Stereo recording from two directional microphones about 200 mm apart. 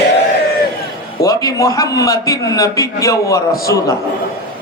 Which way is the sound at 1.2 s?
15° left (ahead or behind).